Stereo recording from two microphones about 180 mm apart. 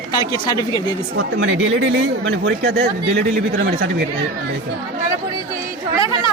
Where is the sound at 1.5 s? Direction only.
90° right.